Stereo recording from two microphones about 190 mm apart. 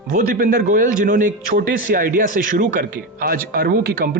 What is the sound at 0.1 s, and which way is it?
A man's voice, 50° right (ahead or behind).